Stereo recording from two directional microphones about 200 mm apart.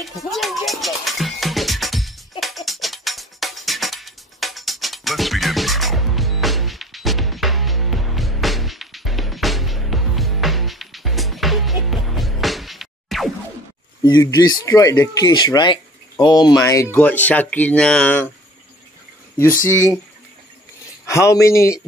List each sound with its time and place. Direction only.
0.0 s music: centre (ahead or behind)
14.0 s speech: 20° left (ahead or behind)
19.3 s speech: 15° left (ahead or behind)
21.0 s speech: 15° left (ahead or behind)